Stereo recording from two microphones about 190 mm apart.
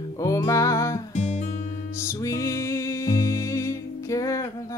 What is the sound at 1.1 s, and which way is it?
Music, 40° left (ahead or behind).